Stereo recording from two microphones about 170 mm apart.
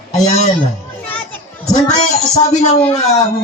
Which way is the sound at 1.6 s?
45° left (ahead or behind).